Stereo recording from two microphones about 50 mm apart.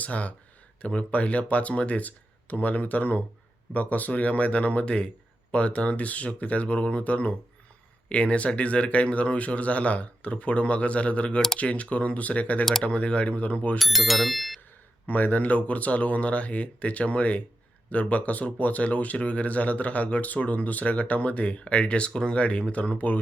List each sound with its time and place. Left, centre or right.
0.0 s speech: left
13.7 s speech: centre
15.0 s speech: left